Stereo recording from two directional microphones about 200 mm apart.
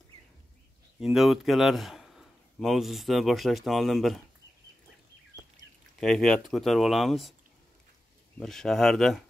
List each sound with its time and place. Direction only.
1.0 s speech: centre (ahead or behind)
5.9 s speech: 5° left (ahead or behind)
8.4 s speech: centre (ahead or behind)